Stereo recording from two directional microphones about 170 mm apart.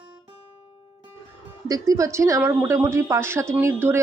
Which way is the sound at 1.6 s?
20° right (ahead or behind).